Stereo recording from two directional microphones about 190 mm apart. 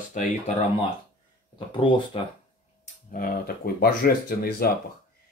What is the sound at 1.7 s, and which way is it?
Speech, 25° left (ahead or behind).